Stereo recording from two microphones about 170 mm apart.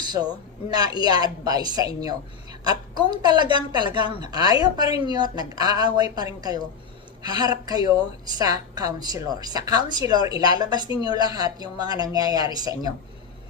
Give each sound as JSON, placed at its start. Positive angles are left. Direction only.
{"t": 0.0, "sound": "a woman's voice", "side_deg": -25}
{"t": 10.8, "sound": "a woman's voice", "side_deg": 30}
{"t": 11.1, "sound": "a woman's voice", "side_deg": -25}